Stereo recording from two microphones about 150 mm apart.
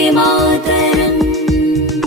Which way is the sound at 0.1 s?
Centre (ahead or behind).